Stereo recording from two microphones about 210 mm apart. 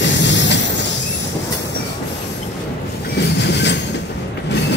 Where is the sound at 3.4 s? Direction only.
55° left (ahead or behind).